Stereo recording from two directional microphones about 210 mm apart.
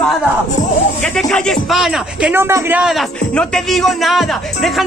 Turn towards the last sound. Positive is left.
turn(degrees=0)  # may be behind; listen again after turning